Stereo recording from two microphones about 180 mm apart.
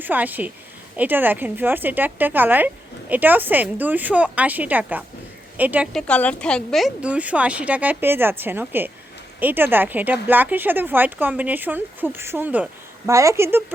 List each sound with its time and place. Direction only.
0.0 s speech: 10° right (ahead or behind)
5.9 s speech: 5° left (ahead or behind); by 13.6 s 15° right (ahead or behind)